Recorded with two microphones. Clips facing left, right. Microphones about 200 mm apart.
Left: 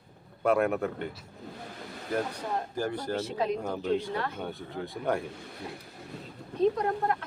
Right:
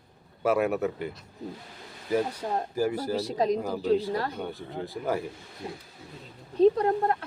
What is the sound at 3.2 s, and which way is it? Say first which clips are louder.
Speech: right 5 dB; 35° right (ahead or behind).